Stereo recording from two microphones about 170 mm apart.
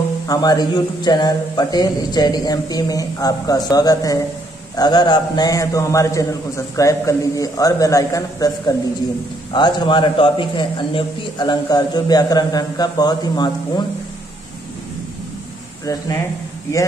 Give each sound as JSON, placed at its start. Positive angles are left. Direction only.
{"t": 0.3, "sound": "a man's voice", "side_deg": 20}
{"t": 15.8, "sound": "a man's voice", "side_deg": 20}